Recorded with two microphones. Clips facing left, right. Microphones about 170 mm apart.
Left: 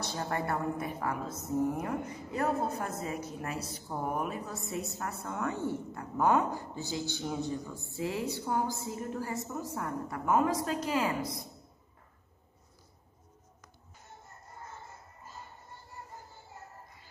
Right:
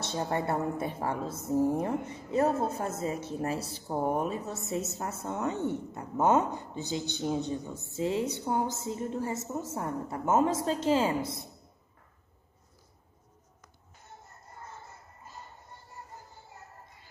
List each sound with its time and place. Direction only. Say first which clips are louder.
0.0 s a woman's voice: right 3 dB; 25° right (ahead or behind)